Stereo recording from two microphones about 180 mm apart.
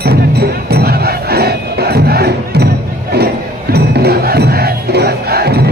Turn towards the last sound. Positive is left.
turn(degrees=-60)  # may be behind; listen again after turning